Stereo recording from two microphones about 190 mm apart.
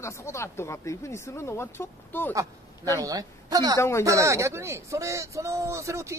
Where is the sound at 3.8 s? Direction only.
15° left (ahead or behind).